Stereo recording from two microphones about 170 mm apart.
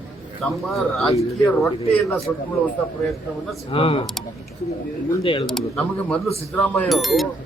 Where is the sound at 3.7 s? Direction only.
35° left (ahead or behind).